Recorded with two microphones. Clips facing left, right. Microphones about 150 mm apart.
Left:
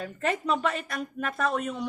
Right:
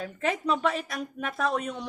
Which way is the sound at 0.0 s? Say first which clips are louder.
Even; centre (ahead or behind).